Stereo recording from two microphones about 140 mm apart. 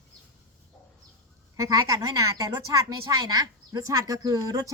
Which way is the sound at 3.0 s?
30° right (ahead or behind).